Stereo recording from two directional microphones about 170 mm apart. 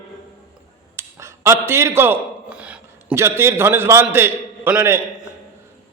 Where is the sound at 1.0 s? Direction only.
15° right (ahead or behind).